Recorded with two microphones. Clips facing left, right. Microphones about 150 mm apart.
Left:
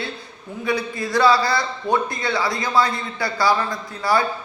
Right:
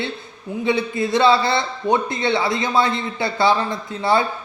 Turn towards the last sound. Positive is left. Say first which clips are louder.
# right 2 dB
turn(degrees=-25)  # may be behind; listen again after turning